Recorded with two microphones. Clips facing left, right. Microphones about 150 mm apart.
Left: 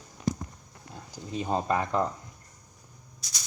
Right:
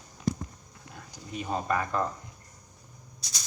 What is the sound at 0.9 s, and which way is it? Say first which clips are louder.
Speech: left 4 dB; 25° left (ahead or behind).